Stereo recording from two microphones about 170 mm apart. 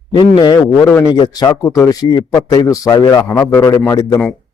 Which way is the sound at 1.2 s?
25° left (ahead or behind).